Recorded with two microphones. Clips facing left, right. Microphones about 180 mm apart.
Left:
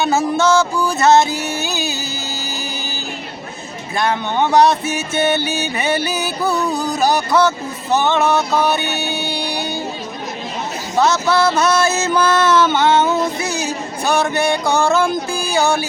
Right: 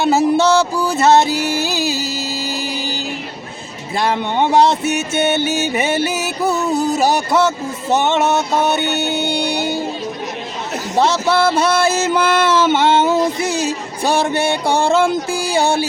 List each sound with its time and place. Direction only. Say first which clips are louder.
0.0 s a sound: right 3 dB; 30° right (ahead or behind)
3.9 s music: right 1 dB; 25° right (ahead or behind)
10.9 s music: even; 30° right (ahead or behind)